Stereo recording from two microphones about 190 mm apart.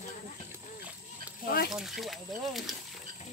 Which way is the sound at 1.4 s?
50° left (ahead or behind).